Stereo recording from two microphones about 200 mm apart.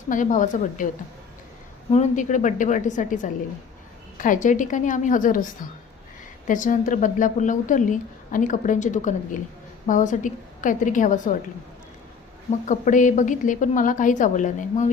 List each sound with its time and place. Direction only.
0.1 s a woman's voice: 40° left (ahead or behind)
1.9 s a woman's voice: 35° left (ahead or behind)
6.5 s a woman's voice: 40° left (ahead or behind)
12.6 s a woman's voice: 40° left (ahead or behind)